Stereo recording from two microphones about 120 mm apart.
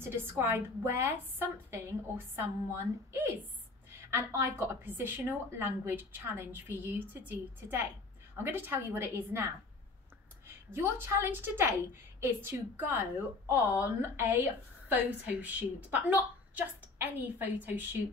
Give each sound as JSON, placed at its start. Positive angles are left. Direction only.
{"t": 0.0, "sound": "a woman's voice", "side_deg": -20}